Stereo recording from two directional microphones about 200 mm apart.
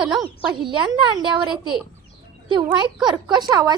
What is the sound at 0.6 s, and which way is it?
A woman's voice, 20° right (ahead or behind).